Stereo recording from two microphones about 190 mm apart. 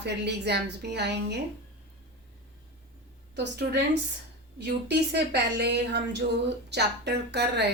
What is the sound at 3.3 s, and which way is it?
Speech, 60° right (ahead or behind).